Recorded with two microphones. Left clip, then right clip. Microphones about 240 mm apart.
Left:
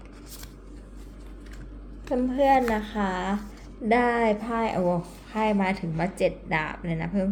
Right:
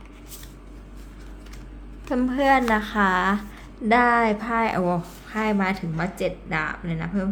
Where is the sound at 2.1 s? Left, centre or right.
Right.